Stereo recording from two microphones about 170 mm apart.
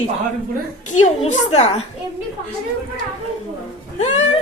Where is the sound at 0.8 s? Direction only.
45° left (ahead or behind).